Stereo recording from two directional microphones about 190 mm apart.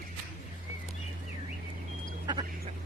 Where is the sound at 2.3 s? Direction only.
20° right (ahead or behind).